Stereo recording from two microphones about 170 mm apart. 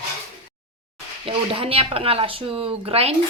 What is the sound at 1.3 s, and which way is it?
Speech, 35° right (ahead or behind).